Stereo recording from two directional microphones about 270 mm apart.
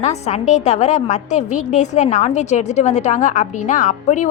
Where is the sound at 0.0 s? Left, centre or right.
Left.